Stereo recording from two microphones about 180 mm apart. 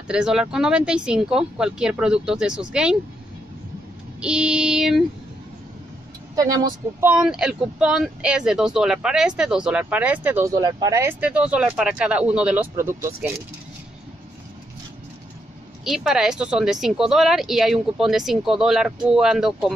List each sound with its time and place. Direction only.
0.1 s speech: 5° right (ahead or behind)
4.2 s speech: 5° right (ahead or behind)
6.3 s speech: 20° right (ahead or behind)
7.0 s speech: 5° right (ahead or behind)
15.8 s speech: centre (ahead or behind)